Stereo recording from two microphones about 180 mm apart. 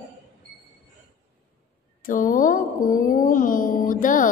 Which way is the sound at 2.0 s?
50° left (ahead or behind).